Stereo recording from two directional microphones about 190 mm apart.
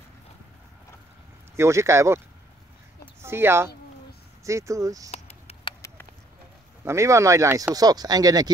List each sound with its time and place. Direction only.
1.6 s speech: 15° right (ahead or behind)
5.1 s a sound: 35° left (ahead or behind)
6.8 s speech: 15° right (ahead or behind)